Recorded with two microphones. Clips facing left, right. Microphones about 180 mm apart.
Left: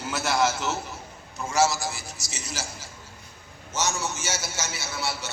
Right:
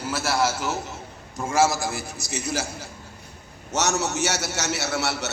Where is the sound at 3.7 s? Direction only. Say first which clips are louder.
Right 5 dB; 70° right (ahead or behind).